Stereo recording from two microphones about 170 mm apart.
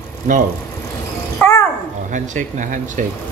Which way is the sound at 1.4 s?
15° left (ahead or behind).